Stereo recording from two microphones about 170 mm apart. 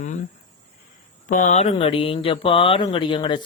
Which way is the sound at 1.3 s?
50° left (ahead or behind).